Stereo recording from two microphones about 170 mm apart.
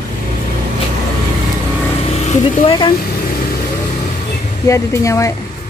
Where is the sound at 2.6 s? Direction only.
30° left (ahead or behind).